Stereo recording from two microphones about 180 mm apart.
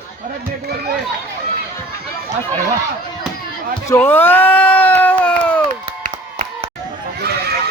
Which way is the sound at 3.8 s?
15° left (ahead or behind).